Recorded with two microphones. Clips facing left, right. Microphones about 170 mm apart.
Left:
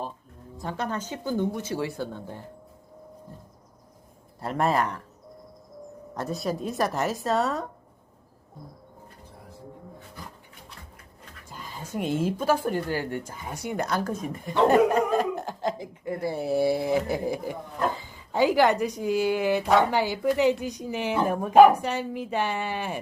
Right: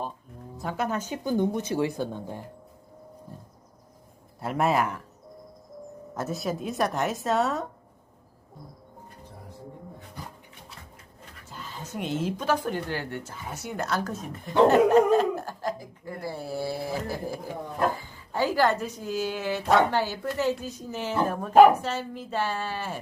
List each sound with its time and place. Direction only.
0.6 s speech: 5° right (ahead or behind)
4.4 s speech: centre (ahead or behind)
6.1 s speech: centre (ahead or behind)
11.4 s speech: 10° left (ahead or behind)